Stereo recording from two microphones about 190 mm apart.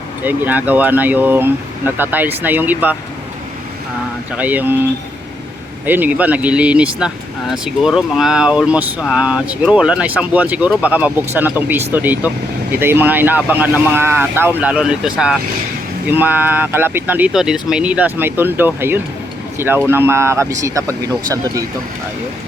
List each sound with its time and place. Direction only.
0.3 s speech: 10° right (ahead or behind)
4.3 s speech: 10° right (ahead or behind)
5.8 s speech: 10° right (ahead or behind)